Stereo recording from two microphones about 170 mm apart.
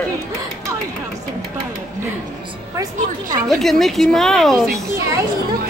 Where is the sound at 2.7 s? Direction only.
20° right (ahead or behind).